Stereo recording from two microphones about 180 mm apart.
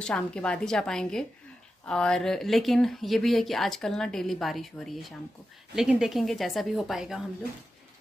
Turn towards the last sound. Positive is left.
turn(degrees=0)  # may be behind; listen again after turning